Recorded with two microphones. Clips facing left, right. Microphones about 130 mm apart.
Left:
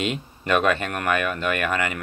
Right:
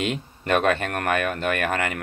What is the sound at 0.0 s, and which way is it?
Speech, 50° right (ahead or behind).